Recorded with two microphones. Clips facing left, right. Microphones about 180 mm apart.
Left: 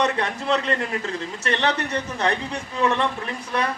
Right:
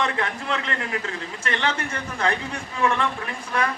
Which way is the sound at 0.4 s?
25° left (ahead or behind).